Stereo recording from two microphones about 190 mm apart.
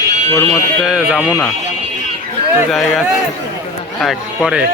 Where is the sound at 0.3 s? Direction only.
15° left (ahead or behind).